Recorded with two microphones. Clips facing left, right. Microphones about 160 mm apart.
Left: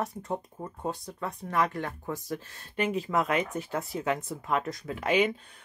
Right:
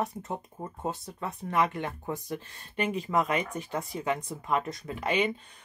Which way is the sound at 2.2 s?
Centre (ahead or behind).